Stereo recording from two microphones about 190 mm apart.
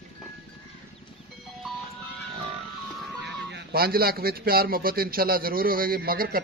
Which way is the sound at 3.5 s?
60° right (ahead or behind).